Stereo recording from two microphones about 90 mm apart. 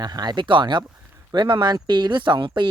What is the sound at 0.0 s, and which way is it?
Speech, 50° right (ahead or behind).